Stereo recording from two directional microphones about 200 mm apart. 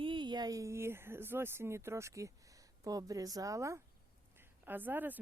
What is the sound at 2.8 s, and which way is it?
Speech, 15° right (ahead or behind).